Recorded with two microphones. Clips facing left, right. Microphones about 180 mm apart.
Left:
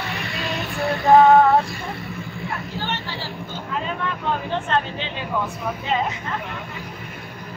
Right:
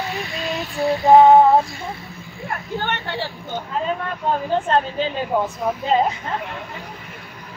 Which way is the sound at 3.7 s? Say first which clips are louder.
Right 2 dB; 40° right (ahead or behind).